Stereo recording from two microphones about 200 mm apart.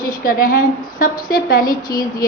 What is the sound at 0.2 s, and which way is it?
A woman's voice, 45° left (ahead or behind).